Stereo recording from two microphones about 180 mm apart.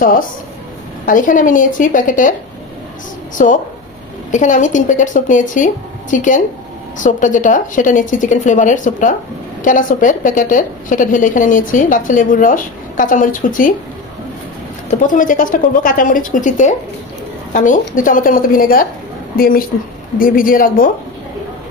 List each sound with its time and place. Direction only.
1.0 s a woman's voice: 45° left (ahead or behind)
4.3 s a woman's voice: 45° left (ahead or behind)
14.9 s a woman's voice: 45° left (ahead or behind)